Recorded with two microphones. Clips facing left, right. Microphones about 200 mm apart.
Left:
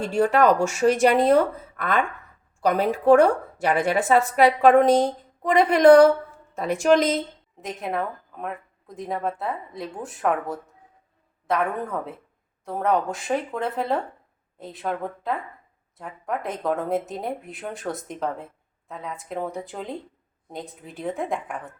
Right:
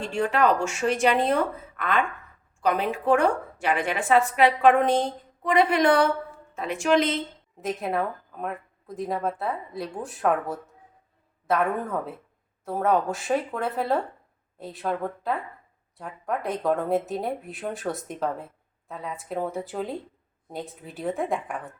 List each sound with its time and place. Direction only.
0.1 s a woman's voice: 40° left (ahead or behind)
7.6 s speech: centre (ahead or behind)